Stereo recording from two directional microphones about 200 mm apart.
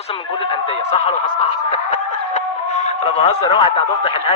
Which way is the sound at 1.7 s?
35° left (ahead or behind).